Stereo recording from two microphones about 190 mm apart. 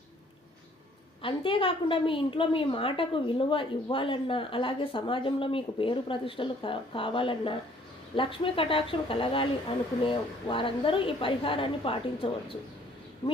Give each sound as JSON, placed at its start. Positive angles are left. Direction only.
{"t": 1.2, "sound": "a woman's voice", "side_deg": 25}